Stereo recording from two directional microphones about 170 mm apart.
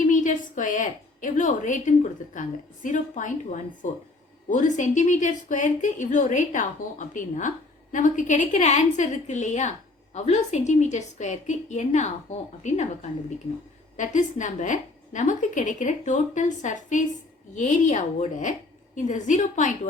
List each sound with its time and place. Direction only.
0.0 s a woman's voice: 50° left (ahead or behind)